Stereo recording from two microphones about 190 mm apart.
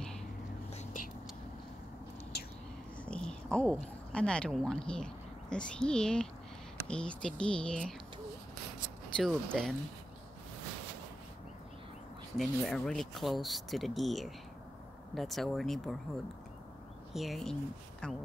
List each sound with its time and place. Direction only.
2.3 s a sound: 55° left (ahead or behind)
3.1 s speech: 5° left (ahead or behind)
9.1 s speech: 5° left (ahead or behind)
12.4 s speech: centre (ahead or behind)
17.1 s speech: centre (ahead or behind)